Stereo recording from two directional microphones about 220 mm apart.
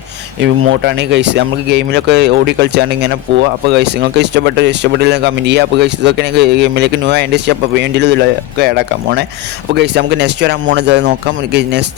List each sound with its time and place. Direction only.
0.3 s speech: 60° right (ahead or behind)